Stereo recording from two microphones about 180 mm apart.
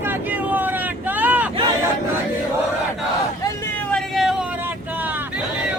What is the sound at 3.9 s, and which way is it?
Vehicle, centre (ahead or behind).